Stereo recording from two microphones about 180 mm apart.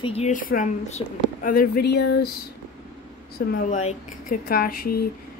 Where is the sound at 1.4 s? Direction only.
60° left (ahead or behind).